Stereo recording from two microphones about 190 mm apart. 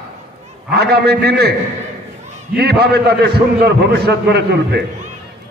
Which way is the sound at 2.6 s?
55° right (ahead or behind).